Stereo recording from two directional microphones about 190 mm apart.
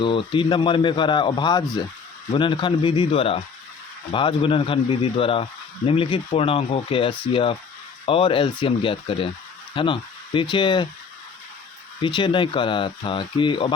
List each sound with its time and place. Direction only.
0.0 s speech: 25° left (ahead or behind)
12.0 s speech: 25° left (ahead or behind)